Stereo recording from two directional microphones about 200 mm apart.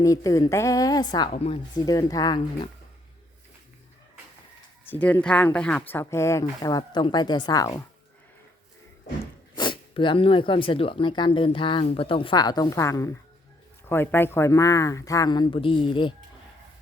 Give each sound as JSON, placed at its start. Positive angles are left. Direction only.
{"t": 0.0, "sound": "speech", "side_deg": 15}
{"t": 4.9, "sound": "speech", "side_deg": 10}
{"t": 9.6, "sound": "speech", "side_deg": 25}